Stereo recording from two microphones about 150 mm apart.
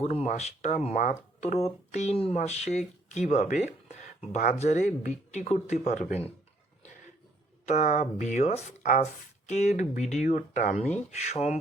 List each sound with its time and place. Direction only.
0.0 s speech: 50° left (ahead or behind)
7.6 s speech: 50° left (ahead or behind)
10.8 s speech: 45° left (ahead or behind)